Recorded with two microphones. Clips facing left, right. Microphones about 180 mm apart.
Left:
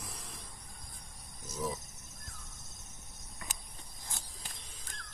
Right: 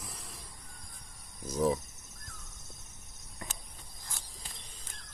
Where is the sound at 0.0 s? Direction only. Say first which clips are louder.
Even; centre (ahead or behind).